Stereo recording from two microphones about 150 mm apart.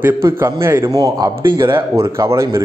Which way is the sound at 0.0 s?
15° right (ahead or behind).